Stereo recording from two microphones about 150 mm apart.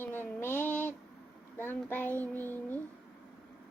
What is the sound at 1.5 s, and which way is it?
A child's voice, 15° left (ahead or behind).